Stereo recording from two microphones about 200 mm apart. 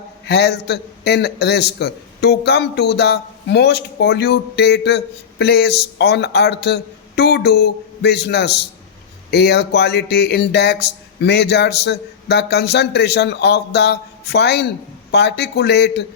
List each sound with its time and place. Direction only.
0.3 s a man's voice: 55° left (ahead or behind)